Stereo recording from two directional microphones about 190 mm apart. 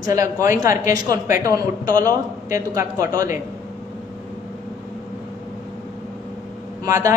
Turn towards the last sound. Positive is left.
turn(degrees=-15)  # may be behind; listen again after turning